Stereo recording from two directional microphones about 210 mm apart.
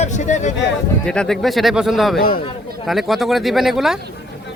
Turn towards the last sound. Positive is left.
turn(degrees=0)  # may be behind; listen again after turning